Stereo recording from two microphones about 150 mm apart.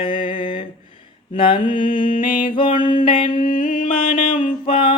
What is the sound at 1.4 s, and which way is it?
Mantra, 35° left (ahead or behind).